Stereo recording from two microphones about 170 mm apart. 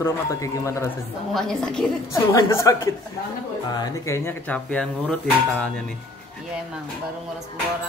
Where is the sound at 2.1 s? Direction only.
15° left (ahead or behind).